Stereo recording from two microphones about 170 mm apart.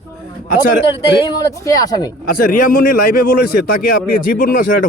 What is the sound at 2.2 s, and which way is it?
A man's voice, 55° left (ahead or behind).